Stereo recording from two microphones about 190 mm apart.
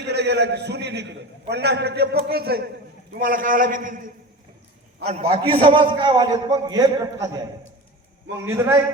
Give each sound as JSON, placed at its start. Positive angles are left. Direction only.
{"t": 0.0, "sound": "a man's voice", "side_deg": -60}
{"t": 5.0, "sound": "a man's voice", "side_deg": -30}